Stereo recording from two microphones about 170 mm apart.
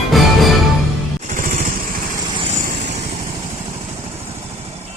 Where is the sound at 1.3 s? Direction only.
50° right (ahead or behind).